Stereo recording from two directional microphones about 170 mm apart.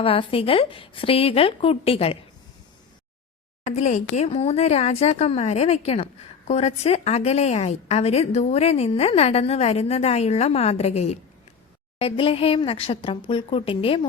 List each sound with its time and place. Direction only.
0.0 s a woman's voice: 35° left (ahead or behind)
3.7 s a woman's voice: 40° left (ahead or behind)